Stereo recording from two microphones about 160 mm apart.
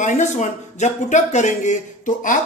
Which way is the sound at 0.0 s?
50° left (ahead or behind).